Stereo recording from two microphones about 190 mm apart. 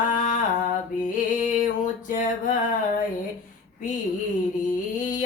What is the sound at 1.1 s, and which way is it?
Music, 45° left (ahead or behind).